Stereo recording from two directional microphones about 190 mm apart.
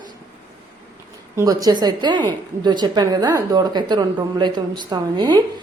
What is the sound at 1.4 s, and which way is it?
A woman's voice, 20° right (ahead or behind).